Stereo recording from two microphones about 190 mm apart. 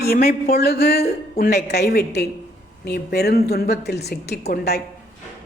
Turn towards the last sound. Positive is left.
turn(degrees=55)  # may be behind; listen again after turning